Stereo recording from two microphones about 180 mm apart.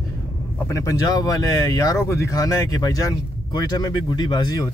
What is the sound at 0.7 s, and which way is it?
Speech, 20° left (ahead or behind).